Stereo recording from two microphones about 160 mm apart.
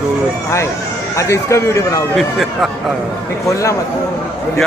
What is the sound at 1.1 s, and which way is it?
Speech, 20° left (ahead or behind).